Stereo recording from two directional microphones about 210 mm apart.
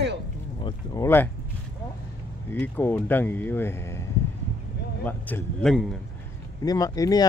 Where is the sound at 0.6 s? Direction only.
20° left (ahead or behind).